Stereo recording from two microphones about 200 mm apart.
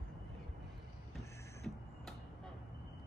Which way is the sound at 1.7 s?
5° left (ahead or behind).